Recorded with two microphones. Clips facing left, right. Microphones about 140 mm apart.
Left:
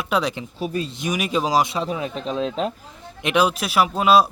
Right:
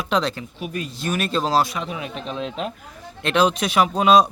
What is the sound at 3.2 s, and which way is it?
Speech, 10° left (ahead or behind).